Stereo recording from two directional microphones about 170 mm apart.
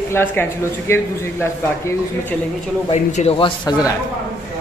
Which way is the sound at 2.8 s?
35° left (ahead or behind).